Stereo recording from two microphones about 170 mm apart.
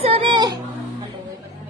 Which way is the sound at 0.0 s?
35° right (ahead or behind).